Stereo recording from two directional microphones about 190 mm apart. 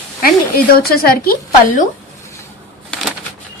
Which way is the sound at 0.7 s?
50° left (ahead or behind).